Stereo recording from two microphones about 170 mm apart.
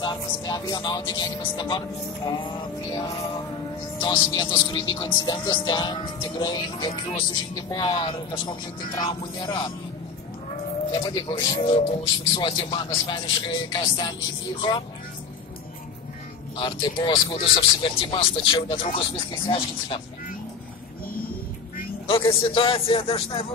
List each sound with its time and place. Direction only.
0.0 s speech: 25° left (ahead or behind)
4.0 s speech: 25° left (ahead or behind)
10.9 s speech: 25° left (ahead or behind)
16.5 s a man's voice: 30° left (ahead or behind)
22.0 s a man's voice: 35° left (ahead or behind)